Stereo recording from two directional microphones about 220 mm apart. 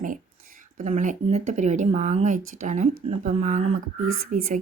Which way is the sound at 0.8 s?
35° right (ahead or behind).